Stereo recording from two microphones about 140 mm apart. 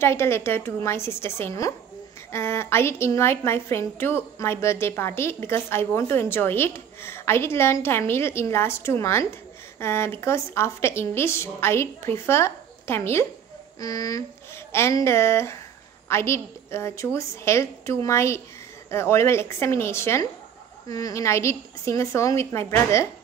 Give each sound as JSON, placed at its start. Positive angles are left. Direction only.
{"t": 0.0, "sound": "a woman's voice", "side_deg": 20}